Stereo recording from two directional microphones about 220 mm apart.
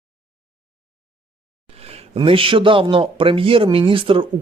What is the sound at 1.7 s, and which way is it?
Speech, 30° right (ahead or behind).